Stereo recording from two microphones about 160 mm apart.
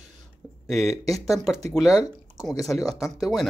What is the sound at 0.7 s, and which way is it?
Speech, centre (ahead or behind).